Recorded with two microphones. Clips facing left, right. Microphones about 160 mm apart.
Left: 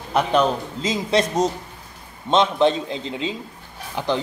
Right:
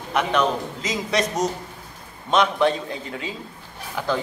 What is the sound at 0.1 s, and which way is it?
A man's voice, 30° left (ahead or behind).